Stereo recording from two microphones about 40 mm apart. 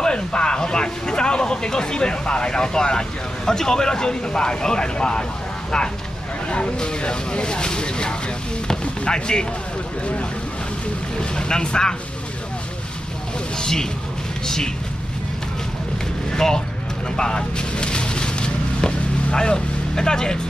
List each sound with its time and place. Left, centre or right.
0.0 s speech: left
6.5 s speech: left
11.1 s speech: centre
13.6 s speech: centre
16.3 s speech: centre
17.2 s vehicle: centre